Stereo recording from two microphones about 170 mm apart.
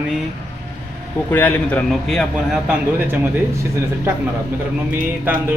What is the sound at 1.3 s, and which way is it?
Speech, 10° left (ahead or behind).